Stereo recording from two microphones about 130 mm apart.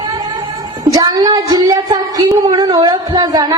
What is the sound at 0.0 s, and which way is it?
A woman's voice, 30° right (ahead or behind).